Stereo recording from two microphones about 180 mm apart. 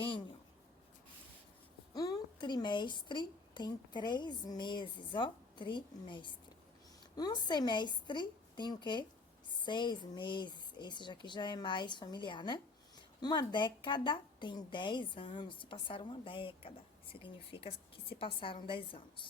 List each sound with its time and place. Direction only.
1.9 s a woman's voice: 20° left (ahead or behind)